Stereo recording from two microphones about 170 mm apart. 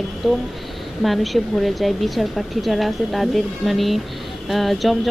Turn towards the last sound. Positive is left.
turn(degrees=0)  # may be behind; listen again after turning